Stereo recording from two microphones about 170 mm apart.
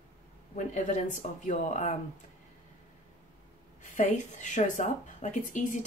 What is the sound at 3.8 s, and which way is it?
A woman's voice, 45° left (ahead or behind).